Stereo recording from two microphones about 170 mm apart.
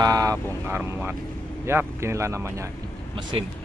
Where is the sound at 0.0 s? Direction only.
20° right (ahead or behind).